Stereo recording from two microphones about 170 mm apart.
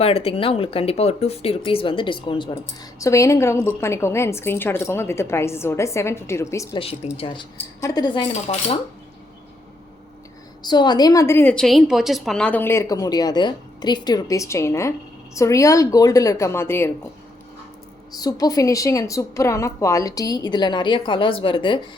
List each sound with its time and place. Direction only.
0.0 s speech: 35° left (ahead or behind)
3.0 s a woman's voice: 20° left (ahead or behind)
6.7 s a woman's voice: 35° left (ahead or behind)
8.3 s speech: 40° left (ahead or behind)
10.6 s a woman's voice: 25° left (ahead or behind)
18.2 s a woman's voice: 20° left (ahead or behind)